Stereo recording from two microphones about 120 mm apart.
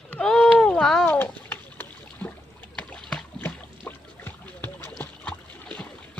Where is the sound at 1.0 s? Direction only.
15° left (ahead or behind).